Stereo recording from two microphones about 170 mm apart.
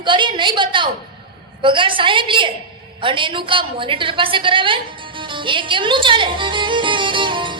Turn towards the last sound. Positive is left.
turn(degrees=-30)  # may be behind; listen again after turning